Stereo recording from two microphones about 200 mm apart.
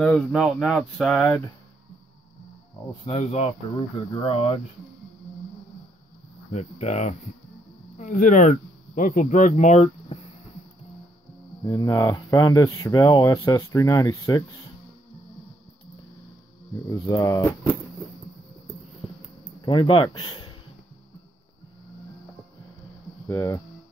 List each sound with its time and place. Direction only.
0.0 s speech: 5° left (ahead or behind)
3.1 s speech: 30° left (ahead or behind)
6.5 s speech: 35° left (ahead or behind)
11.6 s speech: 20° left (ahead or behind)
16.9 s speech: 15° left (ahead or behind)
19.6 s speech: 25° left (ahead or behind)
23.2 s speech: 15° left (ahead or behind)